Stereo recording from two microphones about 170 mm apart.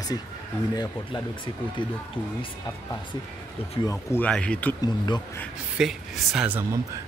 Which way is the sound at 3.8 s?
15° left (ahead or behind).